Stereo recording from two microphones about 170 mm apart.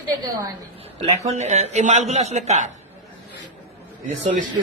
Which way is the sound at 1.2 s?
40° right (ahead or behind).